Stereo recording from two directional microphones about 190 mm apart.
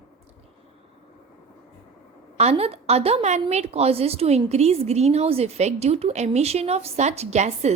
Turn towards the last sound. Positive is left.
turn(degrees=-35)  # may be behind; listen again after turning